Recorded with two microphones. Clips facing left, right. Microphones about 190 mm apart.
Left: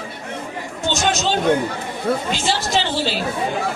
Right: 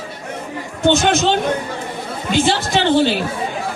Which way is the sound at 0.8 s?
55° right (ahead or behind).